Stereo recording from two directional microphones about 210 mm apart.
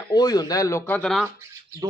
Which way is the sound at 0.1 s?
20° left (ahead or behind).